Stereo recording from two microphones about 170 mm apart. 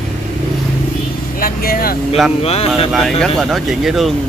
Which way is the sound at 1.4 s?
60° left (ahead or behind).